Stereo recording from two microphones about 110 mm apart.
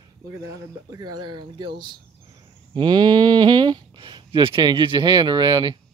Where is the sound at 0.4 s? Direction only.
30° right (ahead or behind).